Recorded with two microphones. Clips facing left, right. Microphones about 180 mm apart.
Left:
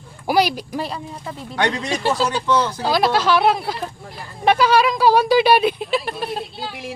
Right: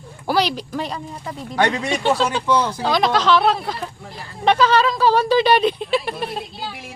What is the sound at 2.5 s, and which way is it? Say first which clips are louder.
Speech: even; 10° right (ahead or behind).